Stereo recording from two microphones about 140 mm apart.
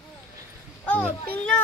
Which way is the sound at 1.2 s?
10° left (ahead or behind).